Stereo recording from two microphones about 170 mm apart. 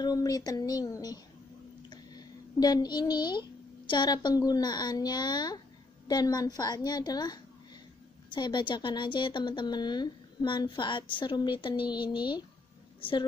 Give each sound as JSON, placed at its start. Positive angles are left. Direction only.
{"t": 0.0, "sound": "a child's voice", "side_deg": 20}